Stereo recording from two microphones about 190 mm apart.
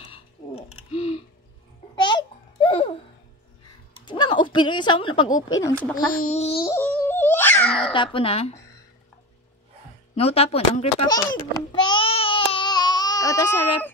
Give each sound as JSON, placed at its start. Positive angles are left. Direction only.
{"t": 0.0, "sound": "typing", "side_deg": 30}
{"t": 2.0, "sound": "babbling", "side_deg": 25}
{"t": 4.0, "sound": "dog", "side_deg": 25}
{"t": 6.2, "sound": "speech", "side_deg": 35}
{"t": 6.6, "sound": "music", "side_deg": 10}
{"t": 7.9, "sound": "speech", "side_deg": 25}
{"t": 10.1, "sound": "speech", "side_deg": 30}
{"t": 11.1, "sound": "babbling", "side_deg": 20}